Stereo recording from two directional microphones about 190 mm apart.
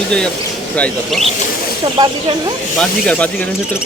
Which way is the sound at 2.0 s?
20° right (ahead or behind).